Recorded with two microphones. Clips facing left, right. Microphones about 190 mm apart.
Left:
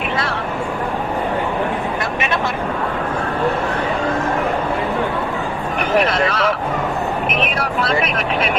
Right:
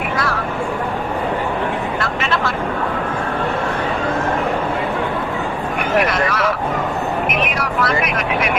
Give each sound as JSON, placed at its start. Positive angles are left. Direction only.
{"t": 2.0, "sound": "a sound", "side_deg": 20}
{"t": 6.1, "sound": "vehicle", "side_deg": 25}
{"t": 7.6, "sound": "vehicle", "side_deg": 30}